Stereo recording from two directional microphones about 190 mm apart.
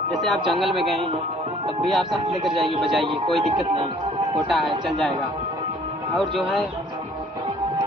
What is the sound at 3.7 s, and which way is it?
Speech, 25° right (ahead or behind).